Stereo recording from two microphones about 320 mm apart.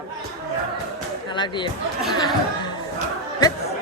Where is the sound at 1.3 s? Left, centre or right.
Centre.